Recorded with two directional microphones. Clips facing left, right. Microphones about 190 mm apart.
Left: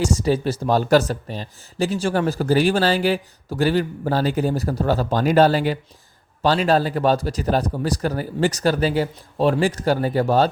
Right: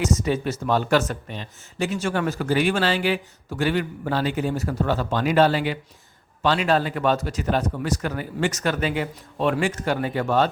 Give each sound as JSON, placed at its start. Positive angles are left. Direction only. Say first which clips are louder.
{"t": 0.0, "sound": "speech", "louder": "left 3 dB", "side_deg": 30}